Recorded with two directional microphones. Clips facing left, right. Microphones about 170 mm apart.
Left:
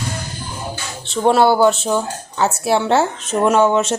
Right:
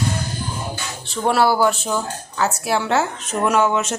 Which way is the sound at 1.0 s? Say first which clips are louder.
Left 4 dB; 25° left (ahead or behind).